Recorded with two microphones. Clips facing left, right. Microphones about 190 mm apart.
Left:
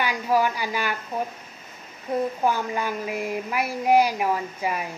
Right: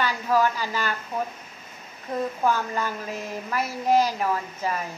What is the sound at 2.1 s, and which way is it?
A woman's voice, 10° left (ahead or behind).